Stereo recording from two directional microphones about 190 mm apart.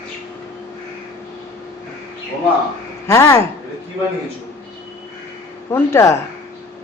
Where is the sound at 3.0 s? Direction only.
15° left (ahead or behind).